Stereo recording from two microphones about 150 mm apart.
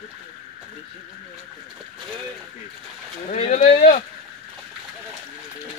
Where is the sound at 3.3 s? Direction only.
50° left (ahead or behind).